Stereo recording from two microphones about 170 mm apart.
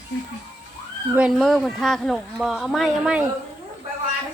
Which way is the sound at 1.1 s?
Centre (ahead or behind).